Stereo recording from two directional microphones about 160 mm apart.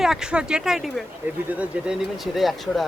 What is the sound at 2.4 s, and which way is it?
Speech, centre (ahead or behind).